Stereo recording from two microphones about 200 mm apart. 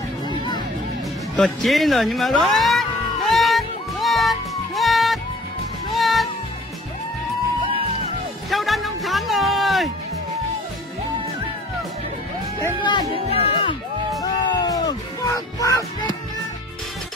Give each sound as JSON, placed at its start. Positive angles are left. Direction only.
{"t": 1.3, "sound": "speech", "side_deg": 0}
{"t": 3.3, "sound": "music", "side_deg": 0}
{"t": 8.5, "sound": "music", "side_deg": 0}
{"t": 13.1, "sound": "music", "side_deg": 30}